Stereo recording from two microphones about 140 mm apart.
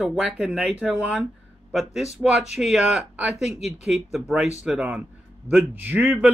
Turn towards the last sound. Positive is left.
turn(degrees=-10)  # may be behind; listen again after turning